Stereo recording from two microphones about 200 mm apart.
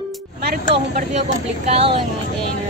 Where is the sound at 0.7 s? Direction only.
35° right (ahead or behind).